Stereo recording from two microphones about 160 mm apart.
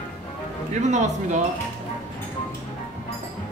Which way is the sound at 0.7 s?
50° right (ahead or behind).